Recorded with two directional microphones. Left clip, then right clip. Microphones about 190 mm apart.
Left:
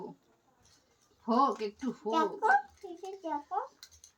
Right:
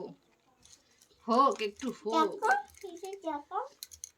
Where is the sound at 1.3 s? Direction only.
5° left (ahead or behind).